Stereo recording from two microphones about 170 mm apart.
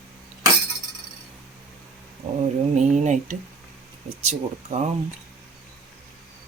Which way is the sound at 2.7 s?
45° right (ahead or behind).